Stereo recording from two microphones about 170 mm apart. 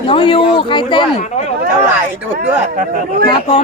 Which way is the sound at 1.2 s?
40° left (ahead or behind).